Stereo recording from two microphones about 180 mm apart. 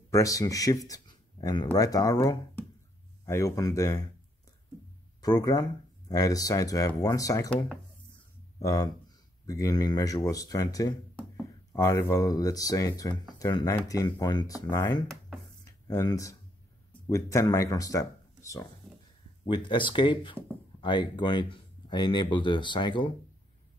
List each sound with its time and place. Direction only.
0.1 s speech: 20° left (ahead or behind)
5.2 s speech: 20° left (ahead or behind)
8.5 s speech: 20° left (ahead or behind)
15.6 s a sound: 20° left (ahead or behind)
17.1 s speech: 15° left (ahead or behind)